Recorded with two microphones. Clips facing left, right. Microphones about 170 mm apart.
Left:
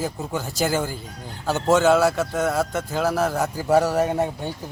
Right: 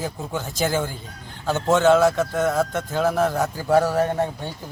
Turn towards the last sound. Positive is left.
turn(degrees=10)  # may be behind; listen again after turning